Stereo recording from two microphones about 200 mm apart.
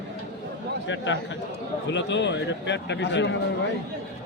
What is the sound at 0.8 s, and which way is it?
A man's voice, 65° left (ahead or behind).